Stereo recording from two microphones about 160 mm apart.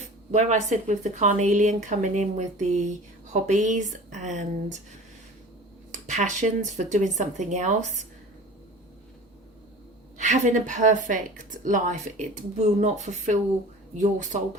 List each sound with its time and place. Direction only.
0.3 s a woman's voice: 45° right (ahead or behind)
5.9 s a woman's voice: 45° right (ahead or behind)
10.2 s a woman's voice: 50° right (ahead or behind)